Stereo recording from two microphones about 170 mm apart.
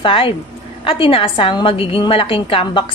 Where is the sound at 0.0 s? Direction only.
30° left (ahead or behind).